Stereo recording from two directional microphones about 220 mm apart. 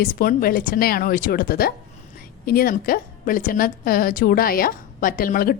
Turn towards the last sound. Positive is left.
turn(degrees=40)  # may be behind; listen again after turning